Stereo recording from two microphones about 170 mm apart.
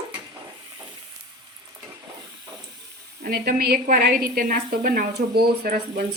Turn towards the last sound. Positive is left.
turn(degrees=-65)  # may be behind; listen again after turning